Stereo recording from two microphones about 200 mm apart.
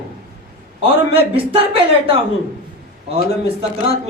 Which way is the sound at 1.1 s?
30° right (ahead or behind).